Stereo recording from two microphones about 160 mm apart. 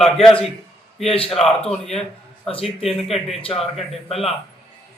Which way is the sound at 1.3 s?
5° left (ahead or behind).